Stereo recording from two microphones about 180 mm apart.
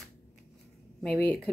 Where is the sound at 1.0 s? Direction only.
5° left (ahead or behind).